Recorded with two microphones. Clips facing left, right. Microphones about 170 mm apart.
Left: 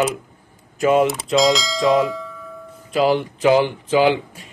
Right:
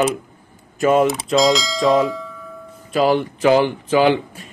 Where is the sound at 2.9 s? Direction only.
15° left (ahead or behind).